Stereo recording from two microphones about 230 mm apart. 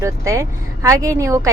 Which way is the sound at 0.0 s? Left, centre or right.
Centre.